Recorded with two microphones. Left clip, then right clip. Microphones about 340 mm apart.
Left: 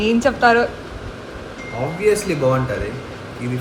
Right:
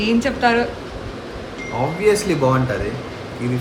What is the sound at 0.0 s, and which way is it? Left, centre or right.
Speech, centre.